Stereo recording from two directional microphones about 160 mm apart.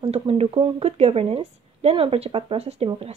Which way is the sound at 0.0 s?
35° right (ahead or behind).